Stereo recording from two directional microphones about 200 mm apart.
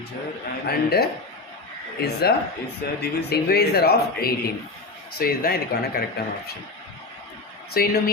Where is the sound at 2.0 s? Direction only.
55° left (ahead or behind).